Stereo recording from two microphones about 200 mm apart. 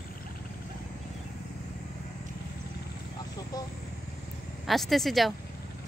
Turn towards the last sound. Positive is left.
turn(degrees=0)  # may be behind; listen again after turning